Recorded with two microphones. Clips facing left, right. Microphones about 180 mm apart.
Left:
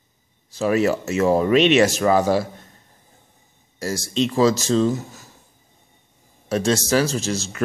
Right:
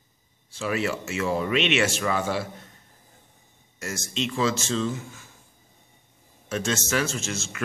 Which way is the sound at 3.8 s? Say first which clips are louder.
Left 8 dB; 35° left (ahead or behind).